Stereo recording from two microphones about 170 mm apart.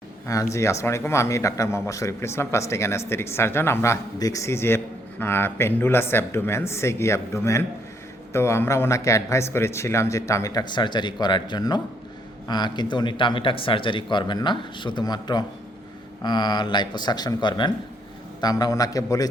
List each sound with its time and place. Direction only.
0.5 s speech: 15° left (ahead or behind)